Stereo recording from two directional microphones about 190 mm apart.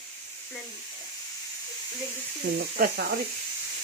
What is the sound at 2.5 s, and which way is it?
Speech, 55° right (ahead or behind).